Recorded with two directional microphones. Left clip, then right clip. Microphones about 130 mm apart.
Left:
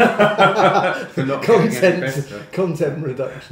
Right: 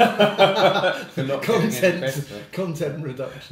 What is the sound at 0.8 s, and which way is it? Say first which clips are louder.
Speech: left 4 dB; 30° right (ahead or behind).